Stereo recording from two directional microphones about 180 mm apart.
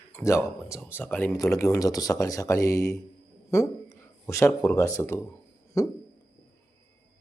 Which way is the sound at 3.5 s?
15° left (ahead or behind).